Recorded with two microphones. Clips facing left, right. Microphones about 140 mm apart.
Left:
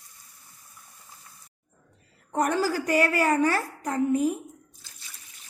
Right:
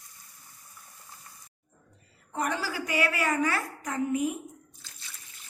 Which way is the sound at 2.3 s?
45° left (ahead or behind).